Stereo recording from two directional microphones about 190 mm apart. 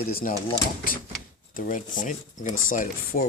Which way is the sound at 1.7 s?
40° left (ahead or behind).